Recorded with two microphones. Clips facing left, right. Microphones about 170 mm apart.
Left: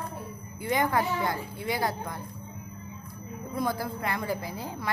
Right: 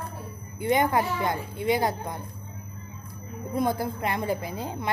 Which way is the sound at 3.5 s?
20° right (ahead or behind).